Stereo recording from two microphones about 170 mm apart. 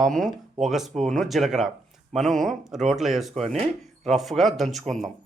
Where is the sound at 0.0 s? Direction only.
Centre (ahead or behind).